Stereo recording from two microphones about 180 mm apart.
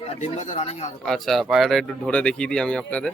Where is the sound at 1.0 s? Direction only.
Centre (ahead or behind).